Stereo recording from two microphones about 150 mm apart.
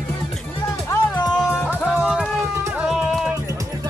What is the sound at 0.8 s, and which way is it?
Music, 20° left (ahead or behind).